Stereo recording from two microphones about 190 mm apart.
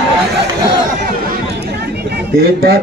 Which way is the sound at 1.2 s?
55° right (ahead or behind).